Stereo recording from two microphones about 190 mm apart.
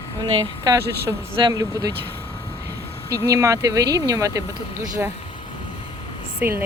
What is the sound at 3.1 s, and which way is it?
Speech, 15° right (ahead or behind).